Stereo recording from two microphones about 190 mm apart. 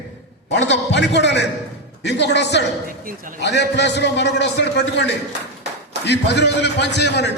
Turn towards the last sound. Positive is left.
turn(degrees=65)  # may be behind; listen again after turning